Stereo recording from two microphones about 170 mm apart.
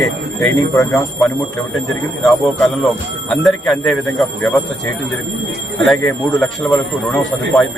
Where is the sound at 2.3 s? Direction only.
Centre (ahead or behind).